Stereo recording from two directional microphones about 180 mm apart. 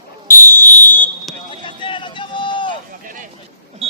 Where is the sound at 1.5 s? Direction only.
25° left (ahead or behind).